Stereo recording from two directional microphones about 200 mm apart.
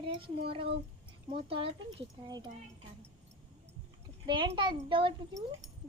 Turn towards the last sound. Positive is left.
turn(degrees=-25)  # may be behind; listen again after turning